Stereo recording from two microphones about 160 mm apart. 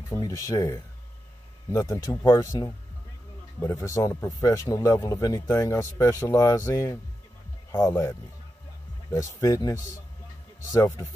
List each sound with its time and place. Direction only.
0.1 s speech: 20° left (ahead or behind)